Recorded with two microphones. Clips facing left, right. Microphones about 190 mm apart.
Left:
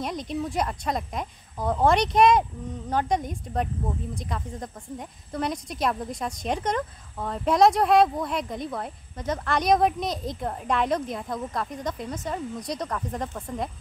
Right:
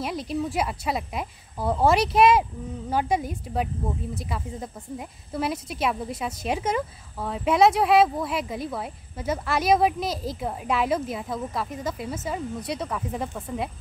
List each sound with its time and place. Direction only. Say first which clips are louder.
0.0 s speech: right 1 dB; 5° right (ahead or behind)